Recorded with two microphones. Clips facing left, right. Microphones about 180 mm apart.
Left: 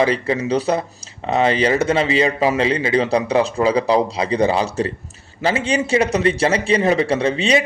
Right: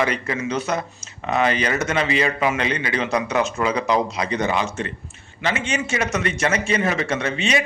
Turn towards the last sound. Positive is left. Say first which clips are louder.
# left 5 dB
turn(degrees=30)  # may be behind; listen again after turning